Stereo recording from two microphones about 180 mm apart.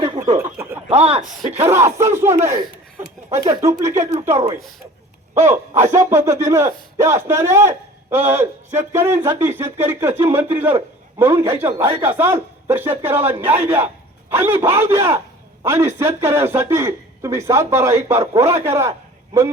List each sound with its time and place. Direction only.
0.3 s a sound: 15° right (ahead or behind)
0.9 s speech: 35° right (ahead or behind)
1.7 s a man's voice: 15° right (ahead or behind)